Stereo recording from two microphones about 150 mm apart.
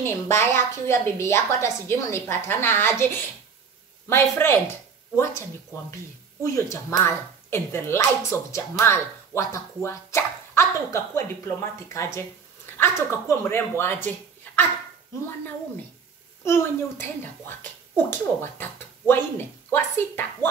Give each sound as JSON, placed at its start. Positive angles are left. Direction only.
{"t": 0.0, "sound": "a woman's voice", "side_deg": 15}
{"t": 16.4, "sound": "a woman's voice", "side_deg": 15}